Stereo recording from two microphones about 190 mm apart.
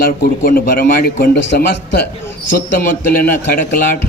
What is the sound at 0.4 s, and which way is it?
Speech, 50° left (ahead or behind).